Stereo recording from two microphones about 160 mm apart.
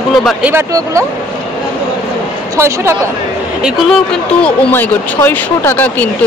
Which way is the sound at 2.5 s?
15° right (ahead or behind).